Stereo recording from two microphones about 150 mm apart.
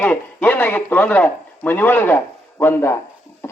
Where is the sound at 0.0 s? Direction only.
10° left (ahead or behind).